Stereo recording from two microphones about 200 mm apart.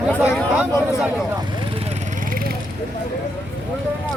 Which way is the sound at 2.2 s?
45° right (ahead or behind).